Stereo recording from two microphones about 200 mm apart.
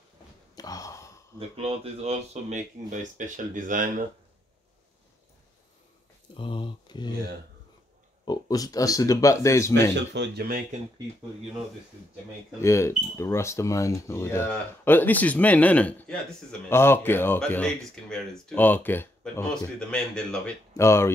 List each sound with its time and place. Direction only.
0.6 s gasp: 15° left (ahead or behind)
1.6 s speech: 30° right (ahead or behind)
6.3 s speech: 25° left (ahead or behind)
8.3 s speech: 20° left (ahead or behind)
10.1 s speech: 55° right (ahead or behind)
12.5 s speech: 15° left (ahead or behind)